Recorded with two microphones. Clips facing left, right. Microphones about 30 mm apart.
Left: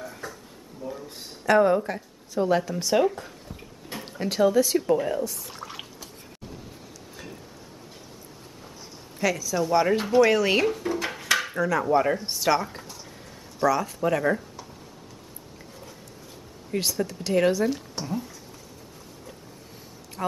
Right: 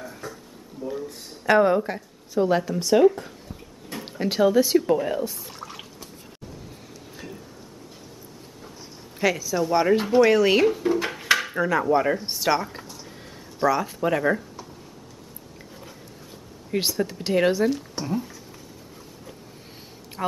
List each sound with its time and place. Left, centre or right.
1.4 s speech: centre
3.9 s a sound: left
4.3 s speech: centre
5.5 s water: centre
9.2 s speech: centre
11.3 s dishes: centre
11.8 s speech: centre
16.7 s speech: centre
17.6 s speech: centre
20.2 s a woman's voice: centre